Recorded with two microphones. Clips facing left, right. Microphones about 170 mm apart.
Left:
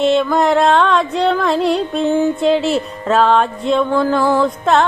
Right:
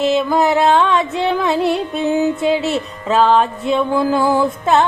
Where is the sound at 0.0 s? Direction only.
Centre (ahead or behind).